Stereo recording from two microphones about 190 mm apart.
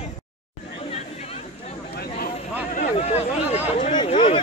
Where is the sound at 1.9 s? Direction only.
50° left (ahead or behind).